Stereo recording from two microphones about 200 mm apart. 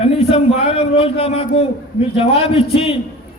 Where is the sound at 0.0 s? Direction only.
30° left (ahead or behind).